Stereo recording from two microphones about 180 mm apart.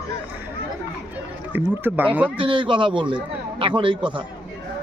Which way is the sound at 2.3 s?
30° right (ahead or behind).